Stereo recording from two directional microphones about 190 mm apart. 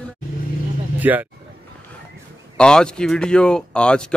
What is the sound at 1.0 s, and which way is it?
Speech, 10° right (ahead or behind).